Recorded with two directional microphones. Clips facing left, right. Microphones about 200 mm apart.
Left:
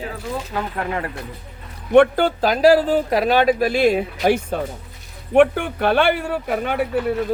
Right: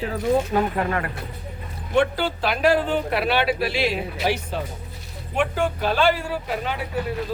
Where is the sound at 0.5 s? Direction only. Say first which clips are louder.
Right 5 dB; 25° right (ahead or behind).